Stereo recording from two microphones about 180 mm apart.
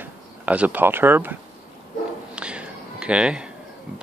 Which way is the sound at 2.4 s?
5° right (ahead or behind).